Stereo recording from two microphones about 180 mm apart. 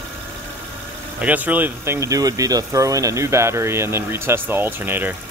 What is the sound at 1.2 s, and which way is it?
Speech, 10° right (ahead or behind).